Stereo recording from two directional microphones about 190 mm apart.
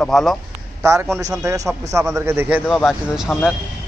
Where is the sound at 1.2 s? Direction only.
15° right (ahead or behind).